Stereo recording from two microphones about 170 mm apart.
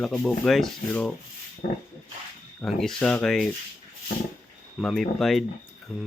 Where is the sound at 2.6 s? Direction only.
Centre (ahead or behind).